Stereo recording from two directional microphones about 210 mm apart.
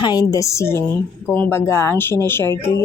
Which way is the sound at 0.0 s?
20° left (ahead or behind).